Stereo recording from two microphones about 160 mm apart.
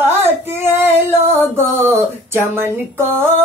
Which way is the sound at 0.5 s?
15° right (ahead or behind).